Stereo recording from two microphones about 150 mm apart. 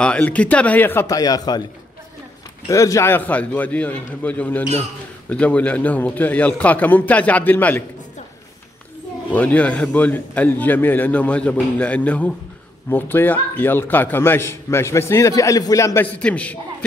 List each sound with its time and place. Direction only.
0.0 s a man's voice: 10° left (ahead or behind); by 1.6 s 25° left (ahead or behind)
2.7 s a man's voice: 20° left (ahead or behind)
9.3 s a man's voice: 10° left (ahead or behind)
16.2 s a man's voice: 10° left (ahead or behind)